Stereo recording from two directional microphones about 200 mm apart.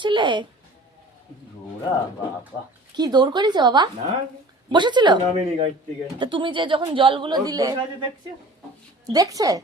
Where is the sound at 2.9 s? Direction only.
20° right (ahead or behind).